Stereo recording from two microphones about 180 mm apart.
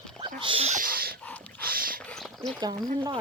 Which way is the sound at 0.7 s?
55° right (ahead or behind).